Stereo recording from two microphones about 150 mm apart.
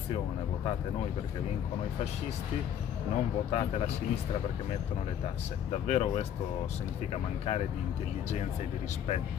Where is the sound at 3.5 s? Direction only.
40° left (ahead or behind).